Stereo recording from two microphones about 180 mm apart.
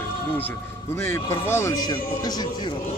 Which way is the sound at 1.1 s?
15° left (ahead or behind).